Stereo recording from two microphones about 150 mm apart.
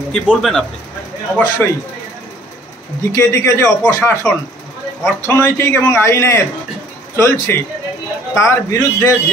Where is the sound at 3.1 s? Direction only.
20° left (ahead or behind).